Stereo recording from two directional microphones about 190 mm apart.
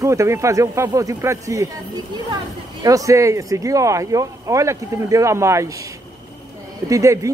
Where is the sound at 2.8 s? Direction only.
20° right (ahead or behind).